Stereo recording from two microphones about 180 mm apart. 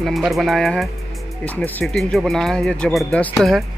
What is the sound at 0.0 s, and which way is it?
Speech, centre (ahead or behind).